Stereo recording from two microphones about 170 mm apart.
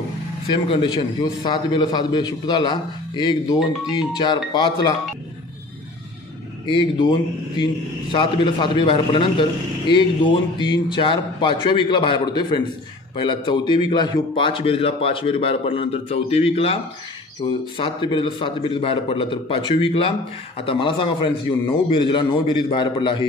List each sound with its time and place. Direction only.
0.7 s a man's voice: 30° left (ahead or behind)
6.7 s a man's voice: 25° left (ahead or behind)